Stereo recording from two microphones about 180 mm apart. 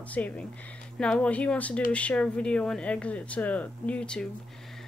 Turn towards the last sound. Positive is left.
turn(degrees=5)  # may be behind; listen again after turning